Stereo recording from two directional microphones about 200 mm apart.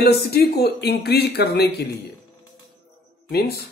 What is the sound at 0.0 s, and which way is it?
Speech, 50° left (ahead or behind).